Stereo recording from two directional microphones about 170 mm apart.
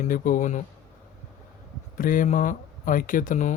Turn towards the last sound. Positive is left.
turn(degrees=50)  # may be behind; listen again after turning